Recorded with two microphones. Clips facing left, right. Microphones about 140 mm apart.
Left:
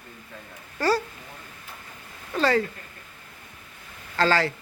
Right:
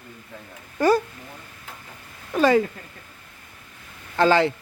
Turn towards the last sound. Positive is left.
turn(degrees=-20)  # may be behind; listen again after turning